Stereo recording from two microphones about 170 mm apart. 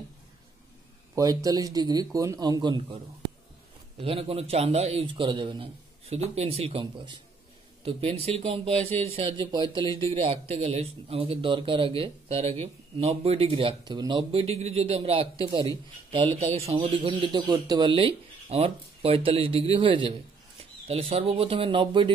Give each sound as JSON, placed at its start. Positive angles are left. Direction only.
{"t": 1.1, "sound": "speech", "side_deg": -20}
{"t": 4.0, "sound": "speech", "side_deg": -35}